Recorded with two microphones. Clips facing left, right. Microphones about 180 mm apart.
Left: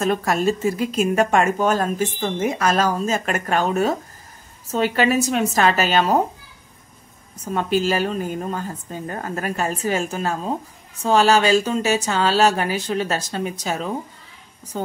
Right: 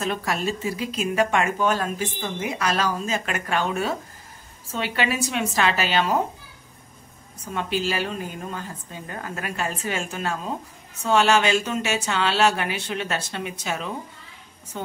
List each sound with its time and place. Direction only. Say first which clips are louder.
0.0 s speech: left 6 dB; 45° left (ahead or behind)
7.5 s speech: left 6 dB; 45° left (ahead or behind)